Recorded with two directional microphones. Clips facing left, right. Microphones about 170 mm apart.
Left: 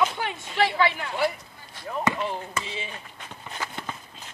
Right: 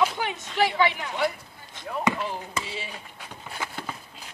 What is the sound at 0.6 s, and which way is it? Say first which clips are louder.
Speech: even; 15° right (ahead or behind).